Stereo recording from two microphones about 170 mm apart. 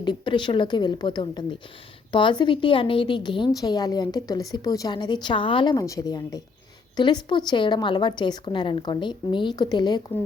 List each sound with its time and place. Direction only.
0.0 s a woman's voice: 25° left (ahead or behind)